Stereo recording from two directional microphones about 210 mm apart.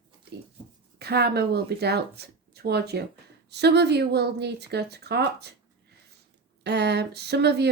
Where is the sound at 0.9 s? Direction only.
50° right (ahead or behind).